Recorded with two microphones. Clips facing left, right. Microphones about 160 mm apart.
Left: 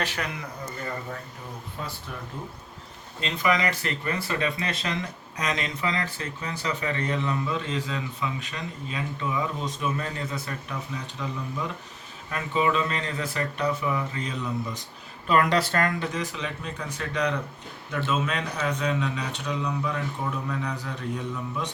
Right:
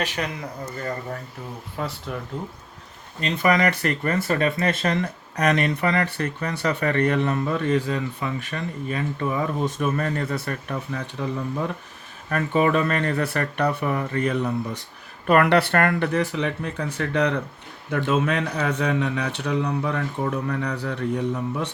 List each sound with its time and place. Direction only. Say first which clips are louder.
1.8 s speech: right 7 dB; 70° right (ahead or behind)
3.2 s speech: right 5 dB; 55° right (ahead or behind)